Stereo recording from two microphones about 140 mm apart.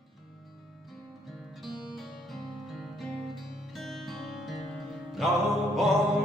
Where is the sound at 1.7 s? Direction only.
35° left (ahead or behind).